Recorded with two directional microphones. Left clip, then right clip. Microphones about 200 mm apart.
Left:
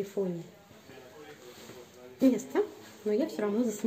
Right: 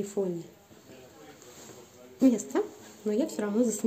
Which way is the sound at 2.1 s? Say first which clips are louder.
Right 1 dB; 10° right (ahead or behind).